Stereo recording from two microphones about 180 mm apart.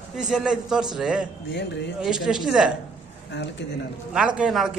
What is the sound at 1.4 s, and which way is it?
Speech, 70° left (ahead or behind).